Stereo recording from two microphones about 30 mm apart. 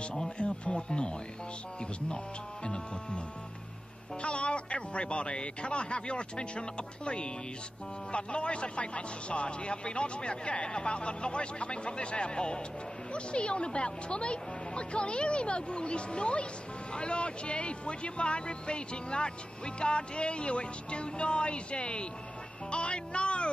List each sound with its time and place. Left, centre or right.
0.4 s speech: left
4.2 s speech: left